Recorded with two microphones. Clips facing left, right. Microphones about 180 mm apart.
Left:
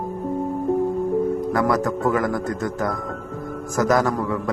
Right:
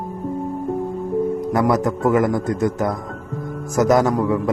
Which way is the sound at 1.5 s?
20° right (ahead or behind).